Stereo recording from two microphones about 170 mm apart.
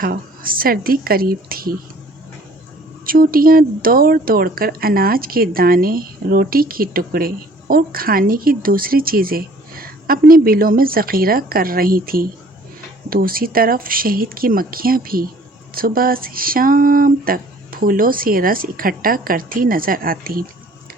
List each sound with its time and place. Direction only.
0.0 s speech: 55° right (ahead or behind)
3.1 s speech: 60° right (ahead or behind)